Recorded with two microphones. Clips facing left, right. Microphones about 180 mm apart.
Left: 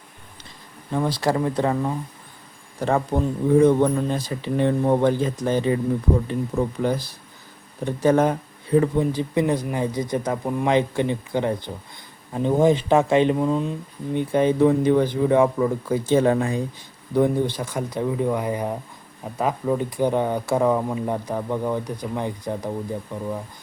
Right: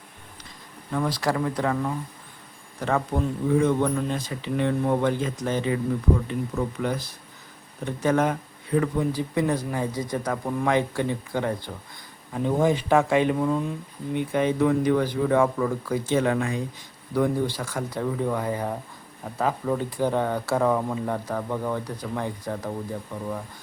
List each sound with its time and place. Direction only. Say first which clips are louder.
0.9 s speech: left 3 dB; 25° left (ahead or behind)
3.1 s speech: left 6 dB; 30° left (ahead or behind)
14.2 s speech: left 4 dB; 30° left (ahead or behind)
16.0 s speech: left 5 dB; 30° left (ahead or behind)
17.2 s speech: left 4 dB; 20° left (ahead or behind)